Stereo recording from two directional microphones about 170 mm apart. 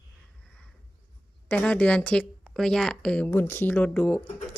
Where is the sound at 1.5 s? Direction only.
5° left (ahead or behind).